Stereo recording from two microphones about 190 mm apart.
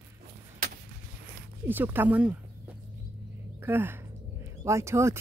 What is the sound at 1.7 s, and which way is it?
Speech, 10° right (ahead or behind).